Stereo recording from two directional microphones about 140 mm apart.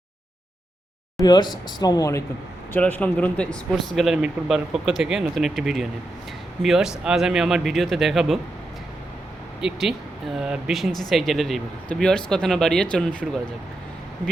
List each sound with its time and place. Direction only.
1.2 s speech: 30° left (ahead or behind)
2.7 s speech: 10° left (ahead or behind)
9.6 s speech: 5° right (ahead or behind)